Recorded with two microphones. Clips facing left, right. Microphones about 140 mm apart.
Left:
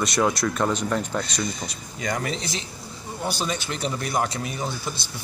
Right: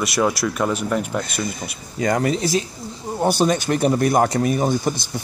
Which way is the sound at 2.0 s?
45° right (ahead or behind).